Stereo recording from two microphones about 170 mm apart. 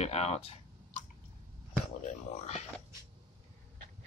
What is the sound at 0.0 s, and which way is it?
Speech, 40° left (ahead or behind).